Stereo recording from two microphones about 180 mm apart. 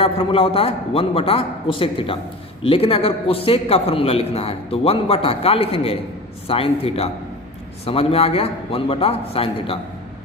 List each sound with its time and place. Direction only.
0.0 s a man's voice: 30° left (ahead or behind)